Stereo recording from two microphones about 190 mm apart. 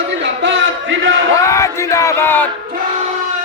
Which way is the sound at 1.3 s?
15° left (ahead or behind).